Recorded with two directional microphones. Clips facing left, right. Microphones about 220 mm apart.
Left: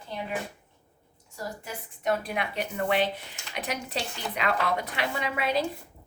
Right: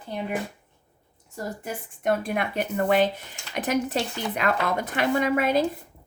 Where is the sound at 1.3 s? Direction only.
50° right (ahead or behind).